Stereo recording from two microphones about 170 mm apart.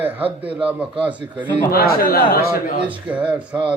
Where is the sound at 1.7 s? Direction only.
60° left (ahead or behind).